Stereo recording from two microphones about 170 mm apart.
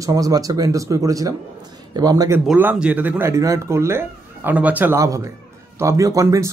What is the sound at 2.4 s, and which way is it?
Speech, 10° right (ahead or behind).